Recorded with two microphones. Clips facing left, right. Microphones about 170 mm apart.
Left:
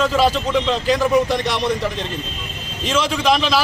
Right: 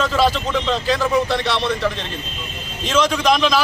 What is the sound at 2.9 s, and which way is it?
Speech, 5° left (ahead or behind).